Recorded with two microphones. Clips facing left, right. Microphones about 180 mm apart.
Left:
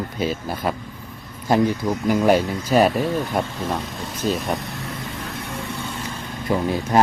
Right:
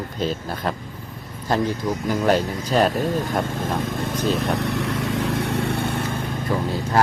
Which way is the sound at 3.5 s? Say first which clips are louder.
Right 2 dB; 50° right (ahead or behind).